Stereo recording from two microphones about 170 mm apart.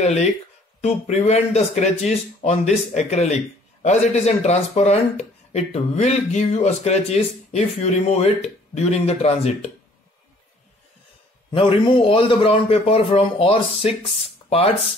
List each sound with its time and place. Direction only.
0.0 s speech: 40° left (ahead or behind)
11.5 s speech: 30° left (ahead or behind)